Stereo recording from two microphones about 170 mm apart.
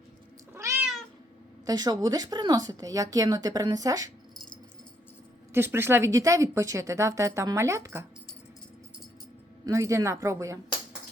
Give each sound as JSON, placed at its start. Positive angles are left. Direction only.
{"t": 0.5, "sound": "cat", "side_deg": -15}
{"t": 1.6, "sound": "speech", "side_deg": -25}
{"t": 5.5, "sound": "speech", "side_deg": -15}
{"t": 9.6, "sound": "speech", "side_deg": -20}